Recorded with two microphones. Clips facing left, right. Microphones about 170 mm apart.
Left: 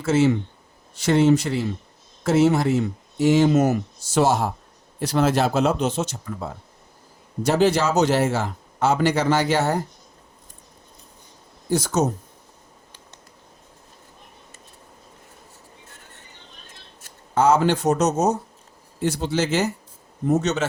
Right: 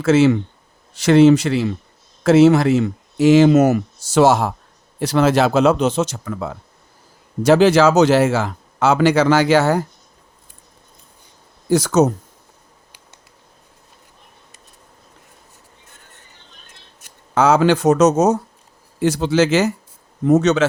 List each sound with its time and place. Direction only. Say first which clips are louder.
0.0 s a man's voice: right 5 dB; 90° right
11.7 s a man's voice: right 7 dB; 90° right
17.3 s a man's voice: right 4 dB; 90° right